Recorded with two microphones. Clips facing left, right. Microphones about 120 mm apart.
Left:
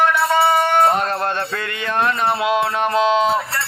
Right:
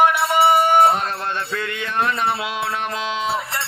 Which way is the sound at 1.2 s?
45° left (ahead or behind).